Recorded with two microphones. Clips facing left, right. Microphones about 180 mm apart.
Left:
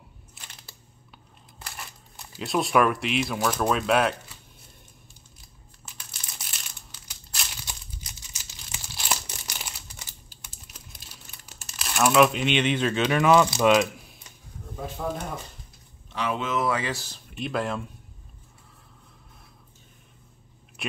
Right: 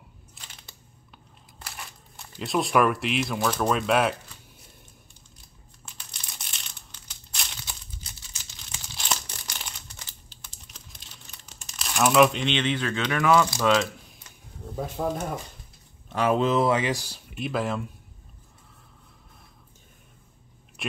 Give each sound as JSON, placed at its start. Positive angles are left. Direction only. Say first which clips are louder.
{"t": 0.3, "sound": "a sound", "louder": "left 1 dB", "side_deg": 5}
{"t": 1.6, "sound": "speech", "louder": "even", "side_deg": 0}
{"t": 5.9, "sound": "crumpling", "louder": "even", "side_deg": 5}
{"t": 16.1, "sound": "speech", "louder": "right 6 dB", "side_deg": -45}